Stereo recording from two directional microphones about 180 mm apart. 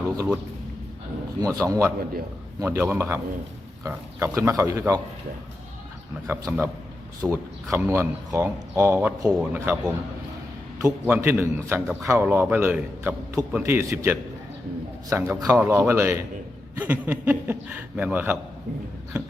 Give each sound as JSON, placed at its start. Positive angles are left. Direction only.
{"t": 1.4, "sound": "speech", "side_deg": -15}
{"t": 6.2, "sound": "speech", "side_deg": -15}